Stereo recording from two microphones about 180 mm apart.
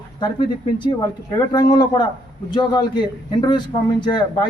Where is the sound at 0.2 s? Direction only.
25° left (ahead or behind).